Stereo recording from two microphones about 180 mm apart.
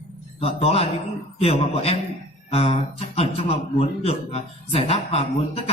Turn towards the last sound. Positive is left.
turn(degrees=35)  # may be behind; listen again after turning